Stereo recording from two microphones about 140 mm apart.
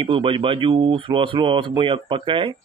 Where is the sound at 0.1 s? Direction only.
40° right (ahead or behind).